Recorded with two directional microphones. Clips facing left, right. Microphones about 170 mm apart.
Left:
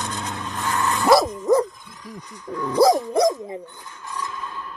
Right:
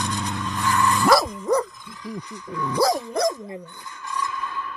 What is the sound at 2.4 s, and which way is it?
Dog, 40° left (ahead or behind).